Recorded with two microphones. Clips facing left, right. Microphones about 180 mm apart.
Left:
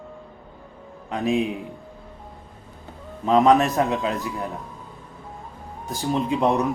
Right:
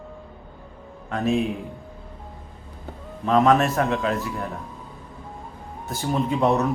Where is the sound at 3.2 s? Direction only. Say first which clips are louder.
Left 1 dB; 20° left (ahead or behind).